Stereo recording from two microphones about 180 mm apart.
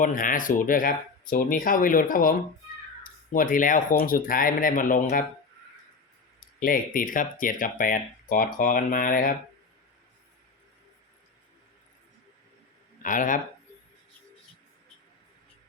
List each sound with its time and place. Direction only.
0.0 s speech: 50° left (ahead or behind)
3.3 s speech: 50° left (ahead or behind)
6.6 s speech: 50° left (ahead or behind)
13.0 s a man's voice: 45° left (ahead or behind)